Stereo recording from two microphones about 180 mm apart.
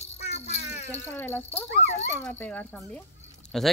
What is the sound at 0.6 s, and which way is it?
Speech, 65° left (ahead or behind).